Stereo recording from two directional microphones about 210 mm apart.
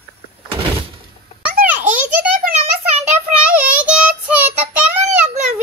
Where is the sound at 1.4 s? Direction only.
5° right (ahead or behind).